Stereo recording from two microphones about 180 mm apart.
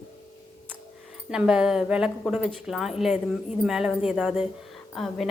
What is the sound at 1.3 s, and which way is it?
A woman's voice, 5° right (ahead or behind).